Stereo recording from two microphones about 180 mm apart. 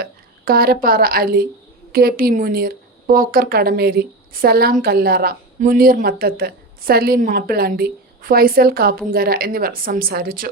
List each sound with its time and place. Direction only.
0.0 s a woman's voice: 55° right (ahead or behind)